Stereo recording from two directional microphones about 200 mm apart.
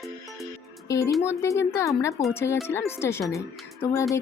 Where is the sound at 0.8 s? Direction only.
15° left (ahead or behind).